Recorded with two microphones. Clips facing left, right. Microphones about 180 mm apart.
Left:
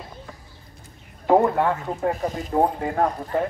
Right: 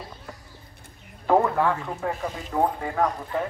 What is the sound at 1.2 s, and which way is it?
A man's voice, 20° left (ahead or behind).